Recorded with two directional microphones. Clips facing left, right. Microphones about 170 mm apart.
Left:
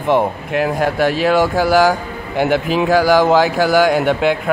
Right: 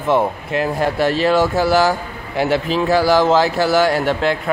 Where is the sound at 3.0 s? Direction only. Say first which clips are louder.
Left 1 dB; 10° left (ahead or behind).